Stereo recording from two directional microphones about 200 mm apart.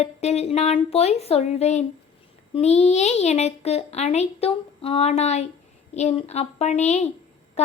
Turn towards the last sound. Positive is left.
turn(degrees=35)  # may be behind; listen again after turning